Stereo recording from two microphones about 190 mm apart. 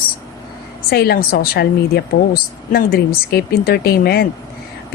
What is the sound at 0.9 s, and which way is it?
A woman's voice, 55° left (ahead or behind).